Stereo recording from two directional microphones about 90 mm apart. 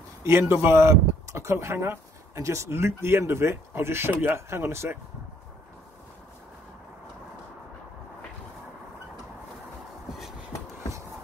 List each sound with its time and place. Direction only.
0.2 s speech: 30° right (ahead or behind)